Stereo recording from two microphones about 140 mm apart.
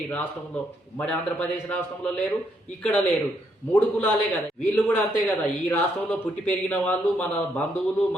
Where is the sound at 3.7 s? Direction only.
10° left (ahead or behind).